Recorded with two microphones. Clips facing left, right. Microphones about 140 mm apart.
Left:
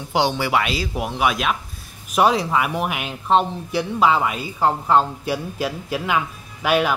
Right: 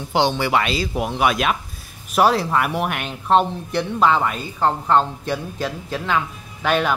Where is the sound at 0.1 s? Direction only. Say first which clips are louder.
Right 1 dB; 10° left (ahead or behind).